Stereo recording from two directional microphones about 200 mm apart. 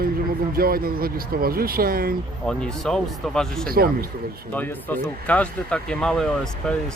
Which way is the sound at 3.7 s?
45° right (ahead or behind).